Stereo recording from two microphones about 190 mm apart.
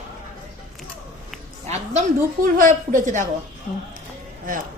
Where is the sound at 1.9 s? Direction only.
40° right (ahead or behind).